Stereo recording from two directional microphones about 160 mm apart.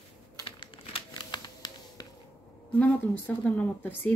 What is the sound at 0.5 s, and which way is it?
Computer keyboard, 30° left (ahead or behind).